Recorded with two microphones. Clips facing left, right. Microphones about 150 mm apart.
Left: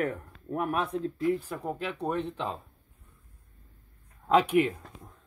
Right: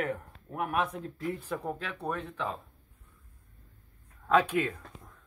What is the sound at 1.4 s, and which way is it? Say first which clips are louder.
Speech: left 1 dB; 10° left (ahead or behind).